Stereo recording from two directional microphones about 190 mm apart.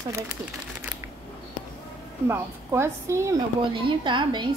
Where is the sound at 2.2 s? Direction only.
15° right (ahead or behind).